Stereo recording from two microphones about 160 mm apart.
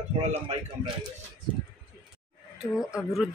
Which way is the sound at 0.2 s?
40° right (ahead or behind).